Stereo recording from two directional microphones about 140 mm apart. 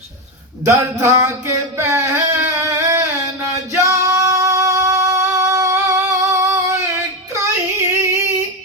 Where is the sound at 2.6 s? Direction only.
20° right (ahead or behind).